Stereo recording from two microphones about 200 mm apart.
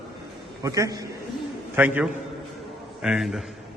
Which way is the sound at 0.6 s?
15° right (ahead or behind).